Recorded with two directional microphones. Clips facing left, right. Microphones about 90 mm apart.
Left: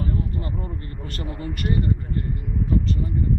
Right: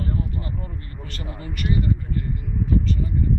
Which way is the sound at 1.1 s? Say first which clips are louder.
Left 3 dB; 45° left (ahead or behind).